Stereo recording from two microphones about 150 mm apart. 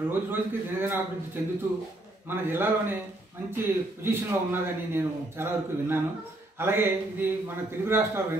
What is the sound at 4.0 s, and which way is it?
A man's voice, 15° right (ahead or behind).